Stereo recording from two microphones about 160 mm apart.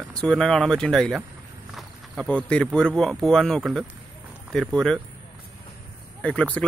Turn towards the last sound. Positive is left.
turn(degrees=10)  # may be behind; listen again after turning